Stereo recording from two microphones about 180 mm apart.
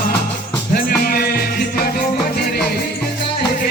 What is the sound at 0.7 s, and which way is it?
Music, 55° left (ahead or behind).